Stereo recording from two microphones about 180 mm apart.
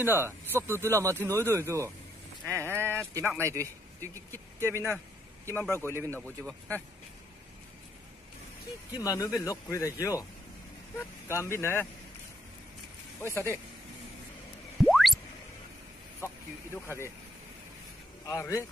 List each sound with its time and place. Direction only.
0.0 s speech: 10° right (ahead or behind)
2.4 s speech: 10° left (ahead or behind)
2.7 s a sound: 15° right (ahead or behind)
3.2 s speech: 15° right (ahead or behind)
5.4 s a man's voice: 10° left (ahead or behind)
8.9 s a man's voice: 20° left (ahead or behind)
11.2 s a man's voice: 15° left (ahead or behind)
14.8 s a sound: centre (ahead or behind)
16.2 s a man's voice: 15° left (ahead or behind)
18.2 s a man's voice: 15° left (ahead or behind)